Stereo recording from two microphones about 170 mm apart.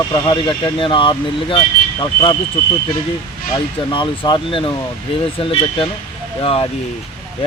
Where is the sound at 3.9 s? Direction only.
30° left (ahead or behind).